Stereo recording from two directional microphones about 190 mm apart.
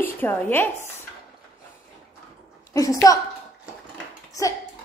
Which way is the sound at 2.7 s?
20° left (ahead or behind).